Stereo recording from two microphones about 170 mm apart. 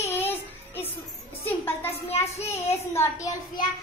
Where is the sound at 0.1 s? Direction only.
10° left (ahead or behind).